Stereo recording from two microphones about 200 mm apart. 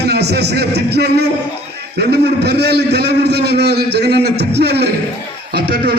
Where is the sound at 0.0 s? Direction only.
55° right (ahead or behind).